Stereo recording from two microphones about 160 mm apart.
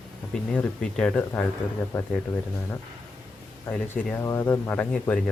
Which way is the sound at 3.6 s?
10° left (ahead or behind).